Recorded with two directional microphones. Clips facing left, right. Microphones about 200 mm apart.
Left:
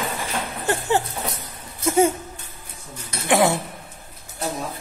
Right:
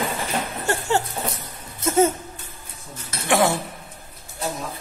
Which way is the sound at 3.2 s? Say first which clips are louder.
Left 1 dB; 20° left (ahead or behind).